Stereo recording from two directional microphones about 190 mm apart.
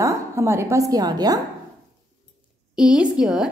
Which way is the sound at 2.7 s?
5° right (ahead or behind).